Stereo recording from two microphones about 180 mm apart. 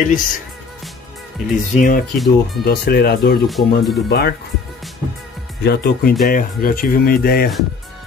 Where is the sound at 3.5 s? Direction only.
Centre (ahead or behind).